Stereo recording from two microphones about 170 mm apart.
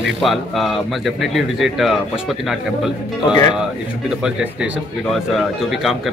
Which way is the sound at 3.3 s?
25° left (ahead or behind).